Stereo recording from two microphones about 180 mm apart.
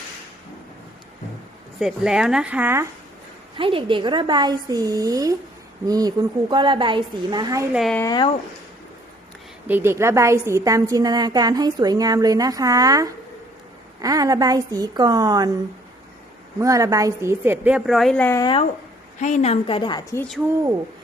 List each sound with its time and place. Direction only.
1.8 s speech: 5° right (ahead or behind)
3.6 s a woman's voice: 30° right (ahead or behind)
7.7 s speech: centre (ahead or behind)
7.9 s a woman's voice: 20° left (ahead or behind)
9.6 s a woman's voice: 10° right (ahead or behind)
16.6 s a woman's voice: 20° right (ahead or behind); by 18.4 s 10° left (ahead or behind)
19.2 s a woman's voice: 40° left (ahead or behind); by 20.2 s 20° left (ahead or behind)